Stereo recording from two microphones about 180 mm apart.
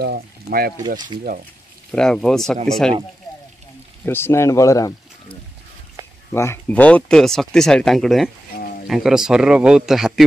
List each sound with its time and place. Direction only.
0.0 s speech: 60° right (ahead or behind)
0.8 s speech: 25° right (ahead or behind)
1.9 s speech: 5° left (ahead or behind)
4.0 s speech: 15° left (ahead or behind)
6.3 s speech: 15° left (ahead or behind); by 10.2 s centre (ahead or behind)